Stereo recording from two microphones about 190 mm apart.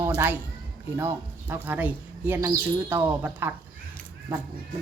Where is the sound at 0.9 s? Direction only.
10° right (ahead or behind).